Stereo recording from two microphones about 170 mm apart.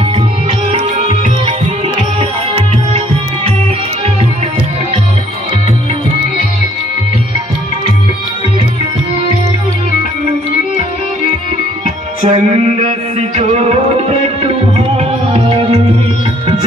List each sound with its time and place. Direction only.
0.7 s music: 40° right (ahead or behind)
12.3 s music: 35° right (ahead or behind)